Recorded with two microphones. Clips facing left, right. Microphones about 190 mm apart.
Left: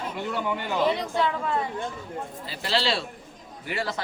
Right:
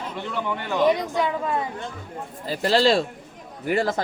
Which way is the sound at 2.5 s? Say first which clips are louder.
Right 9 dB; 45° right (ahead or behind).